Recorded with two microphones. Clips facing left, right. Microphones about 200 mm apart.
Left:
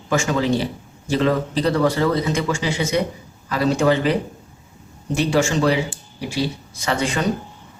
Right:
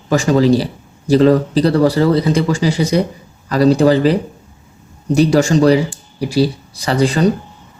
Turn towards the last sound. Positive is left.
turn(degrees=-35)  # may be behind; listen again after turning